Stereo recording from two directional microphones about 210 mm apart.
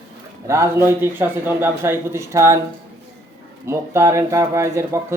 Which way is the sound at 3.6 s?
15° right (ahead or behind).